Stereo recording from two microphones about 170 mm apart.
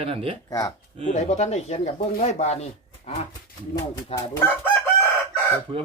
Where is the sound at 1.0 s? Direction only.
45° left (ahead or behind).